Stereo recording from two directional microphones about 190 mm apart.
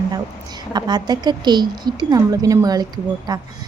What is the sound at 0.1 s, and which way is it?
A woman's voice, 20° right (ahead or behind).